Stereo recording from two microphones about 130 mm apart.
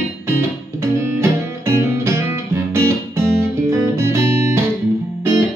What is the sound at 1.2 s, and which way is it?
Music, 20° right (ahead or behind).